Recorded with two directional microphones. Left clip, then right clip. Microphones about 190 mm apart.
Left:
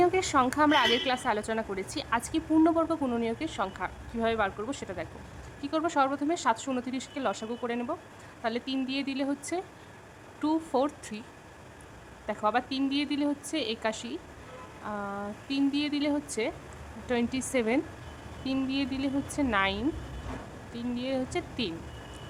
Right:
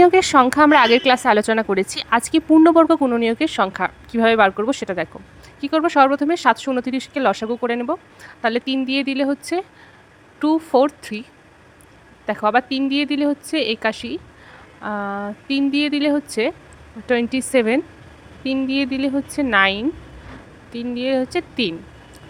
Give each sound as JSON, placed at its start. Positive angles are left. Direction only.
{"t": 0.0, "sound": "a woman's voice", "side_deg": -40}
{"t": 12.2, "sound": "speech", "side_deg": -30}